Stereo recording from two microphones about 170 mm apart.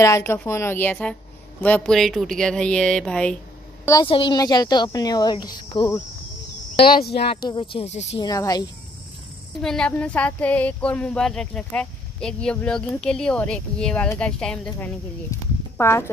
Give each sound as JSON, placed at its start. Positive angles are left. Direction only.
{"t": 0.0, "sound": "speech", "side_deg": 15}
{"t": 3.8, "sound": "a woman's voice", "side_deg": 20}
{"t": 7.2, "sound": "speech", "side_deg": 30}
{"t": 8.2, "sound": "speech", "side_deg": 20}
{"t": 9.6, "sound": "speech", "side_deg": 5}